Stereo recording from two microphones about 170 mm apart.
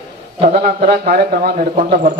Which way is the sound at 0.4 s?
55° right (ahead or behind).